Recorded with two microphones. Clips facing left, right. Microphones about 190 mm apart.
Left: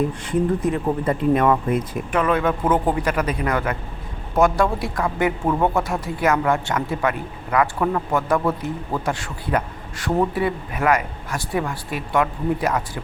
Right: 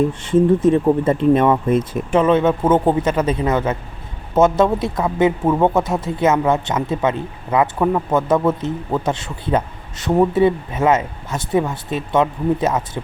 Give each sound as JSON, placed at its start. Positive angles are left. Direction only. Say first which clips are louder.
{"t": 0.1, "sound": "speech", "louder": "right 6 dB", "side_deg": -25}